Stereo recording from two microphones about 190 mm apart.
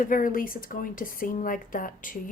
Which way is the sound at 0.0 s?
45° left (ahead or behind).